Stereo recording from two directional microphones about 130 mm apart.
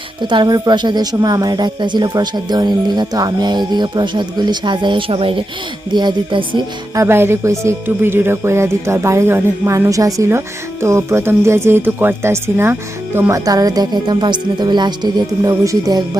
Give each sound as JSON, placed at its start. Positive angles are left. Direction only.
{"t": 0.2, "sound": "a woman's voice", "side_deg": -35}
{"t": 6.9, "sound": "music", "side_deg": -20}
{"t": 13.1, "sound": "speech", "side_deg": -15}
{"t": 13.4, "sound": "a woman's voice", "side_deg": -30}